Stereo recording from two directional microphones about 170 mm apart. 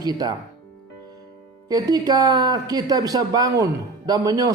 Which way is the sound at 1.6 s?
20° right (ahead or behind).